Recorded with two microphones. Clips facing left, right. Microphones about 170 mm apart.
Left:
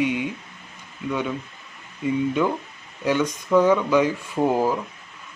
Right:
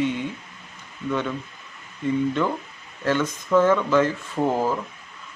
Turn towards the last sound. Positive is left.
turn(degrees=10)  # may be behind; listen again after turning